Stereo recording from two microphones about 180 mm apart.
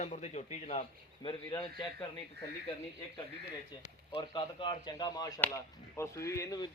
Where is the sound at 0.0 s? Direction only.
40° left (ahead or behind).